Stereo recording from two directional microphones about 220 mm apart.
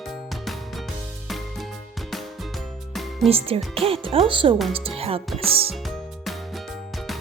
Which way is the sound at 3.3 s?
25° right (ahead or behind).